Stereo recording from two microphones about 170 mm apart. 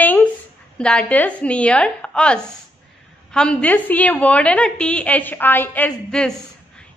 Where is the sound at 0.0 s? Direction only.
10° left (ahead or behind).